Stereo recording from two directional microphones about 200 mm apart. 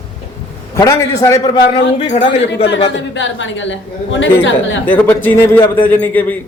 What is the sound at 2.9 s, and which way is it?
A woman's voice, 70° left (ahead or behind).